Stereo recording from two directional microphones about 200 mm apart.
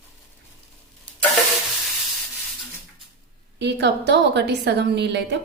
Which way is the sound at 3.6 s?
55° right (ahead or behind).